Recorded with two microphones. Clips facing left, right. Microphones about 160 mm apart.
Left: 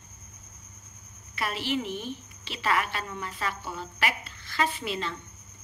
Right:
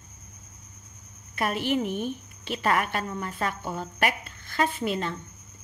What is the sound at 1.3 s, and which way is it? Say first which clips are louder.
A woman's voice: right 4 dB; 50° right (ahead or behind).